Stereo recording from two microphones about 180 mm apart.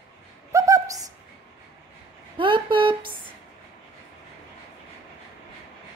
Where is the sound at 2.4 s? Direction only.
30° right (ahead or behind).